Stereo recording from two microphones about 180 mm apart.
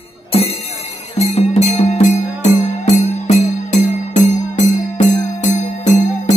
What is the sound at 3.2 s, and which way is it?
Music, 40° left (ahead or behind).